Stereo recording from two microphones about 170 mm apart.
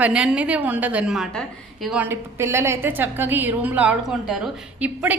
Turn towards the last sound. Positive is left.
turn(degrees=-10)  # may be behind; listen again after turning